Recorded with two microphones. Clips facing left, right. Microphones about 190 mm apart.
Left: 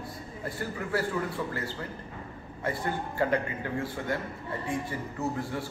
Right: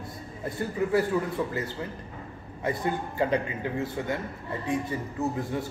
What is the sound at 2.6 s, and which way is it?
A man's voice, 15° right (ahead or behind).